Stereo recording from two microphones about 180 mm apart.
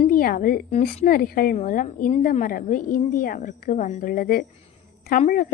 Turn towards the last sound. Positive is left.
turn(degrees=50)  # may be behind; listen again after turning